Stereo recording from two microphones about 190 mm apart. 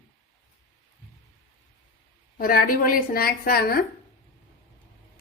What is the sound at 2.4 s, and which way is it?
A woman's voice, 50° left (ahead or behind).